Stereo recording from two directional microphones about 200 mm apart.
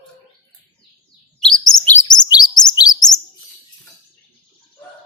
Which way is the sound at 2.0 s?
20° left (ahead or behind).